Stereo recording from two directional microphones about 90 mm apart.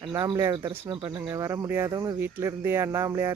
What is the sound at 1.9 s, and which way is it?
Speech, 40° right (ahead or behind).